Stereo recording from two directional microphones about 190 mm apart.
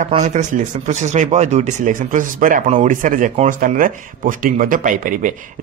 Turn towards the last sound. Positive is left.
turn(degrees=-45)  # may be behind; listen again after turning